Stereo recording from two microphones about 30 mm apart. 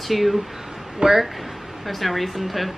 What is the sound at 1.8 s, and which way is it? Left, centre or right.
Speech, centre.